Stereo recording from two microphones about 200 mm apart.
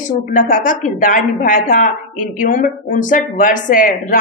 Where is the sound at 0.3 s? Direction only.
40° left (ahead or behind).